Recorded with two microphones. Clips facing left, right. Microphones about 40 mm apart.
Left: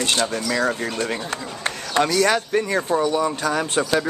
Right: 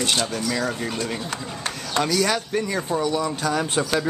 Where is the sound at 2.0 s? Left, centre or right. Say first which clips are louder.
Left 3 dB; centre.